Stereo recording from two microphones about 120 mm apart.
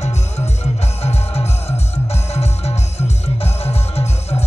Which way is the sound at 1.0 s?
60° left (ahead or behind).